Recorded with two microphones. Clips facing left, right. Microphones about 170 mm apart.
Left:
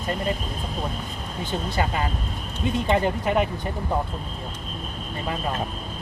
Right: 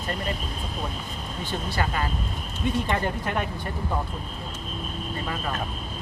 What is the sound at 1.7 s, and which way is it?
Speech, 20° left (ahead or behind).